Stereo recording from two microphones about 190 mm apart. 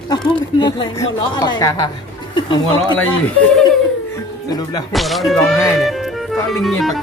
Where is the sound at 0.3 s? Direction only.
25° left (ahead or behind).